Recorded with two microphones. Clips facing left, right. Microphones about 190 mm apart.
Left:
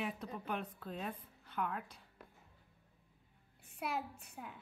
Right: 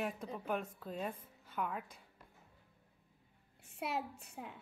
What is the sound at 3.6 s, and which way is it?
Speech, 25° right (ahead or behind).